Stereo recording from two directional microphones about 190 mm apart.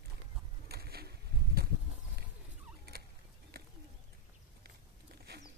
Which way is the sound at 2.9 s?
55° right (ahead or behind).